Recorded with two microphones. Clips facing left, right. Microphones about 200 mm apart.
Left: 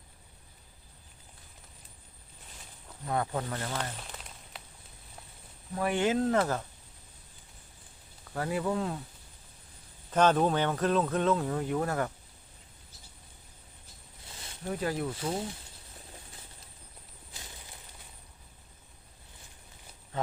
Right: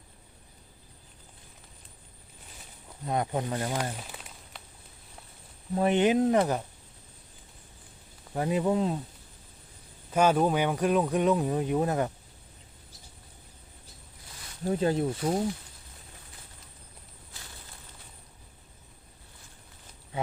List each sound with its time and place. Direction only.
3.1 s speech: 20° right (ahead or behind); by 4.6 s 5° right (ahead or behind)
5.7 s speech: 25° right (ahead or behind)
8.3 s speech: 20° right (ahead or behind)
10.1 s speech: 10° right (ahead or behind)
14.6 s speech: 25° right (ahead or behind)
20.1 s a sound: 10° right (ahead or behind)